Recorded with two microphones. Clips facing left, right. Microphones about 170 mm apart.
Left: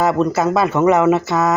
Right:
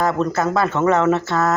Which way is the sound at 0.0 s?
15° left (ahead or behind).